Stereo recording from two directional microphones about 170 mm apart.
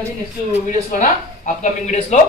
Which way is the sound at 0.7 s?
45° left (ahead or behind).